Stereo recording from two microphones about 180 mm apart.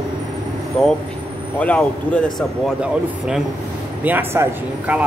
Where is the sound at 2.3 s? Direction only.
5° right (ahead or behind).